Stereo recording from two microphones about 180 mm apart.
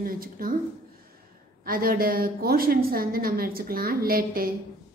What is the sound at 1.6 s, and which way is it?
A woman's voice, 55° right (ahead or behind).